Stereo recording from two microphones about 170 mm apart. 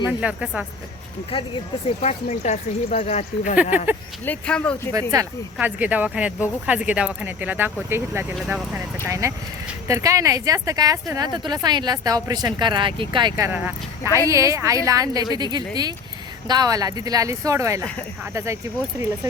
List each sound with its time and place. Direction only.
0.2 s speech: 5° right (ahead or behind)
2.0 s speech: 40° left (ahead or behind)
3.5 s speech: 10° right (ahead or behind)
4.3 s speech: 5° left (ahead or behind)
5.5 s a woman's voice: 10° right (ahead or behind)